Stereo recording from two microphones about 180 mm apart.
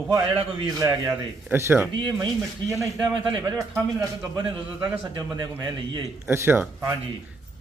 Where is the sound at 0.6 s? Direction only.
20° right (ahead or behind).